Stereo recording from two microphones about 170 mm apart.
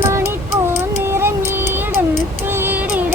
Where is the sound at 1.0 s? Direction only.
15° right (ahead or behind).